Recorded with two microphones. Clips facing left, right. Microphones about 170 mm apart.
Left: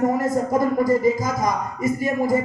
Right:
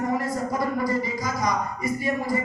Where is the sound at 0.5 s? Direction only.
45° left (ahead or behind).